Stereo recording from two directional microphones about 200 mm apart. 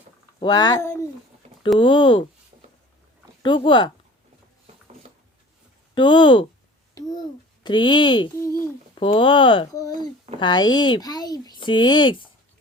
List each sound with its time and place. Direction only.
0.3 s a child's voice: 20° left (ahead or behind)
3.4 s a child's voice: 25° left (ahead or behind)
5.9 s a child's voice: 25° left (ahead or behind)
7.6 s a child's voice: 20° left (ahead or behind)